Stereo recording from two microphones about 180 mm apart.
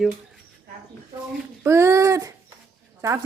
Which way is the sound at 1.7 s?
15° right (ahead or behind).